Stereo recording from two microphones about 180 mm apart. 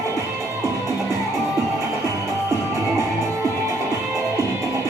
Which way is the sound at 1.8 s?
15° right (ahead or behind).